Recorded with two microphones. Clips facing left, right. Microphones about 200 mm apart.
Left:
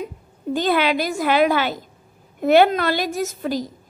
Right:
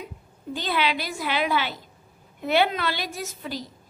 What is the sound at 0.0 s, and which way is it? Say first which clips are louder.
A woman's voice: left 9 dB; 45° left (ahead or behind).